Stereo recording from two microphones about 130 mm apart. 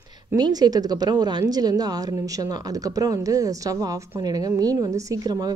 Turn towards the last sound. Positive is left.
turn(degrees=-30)  # may be behind; listen again after turning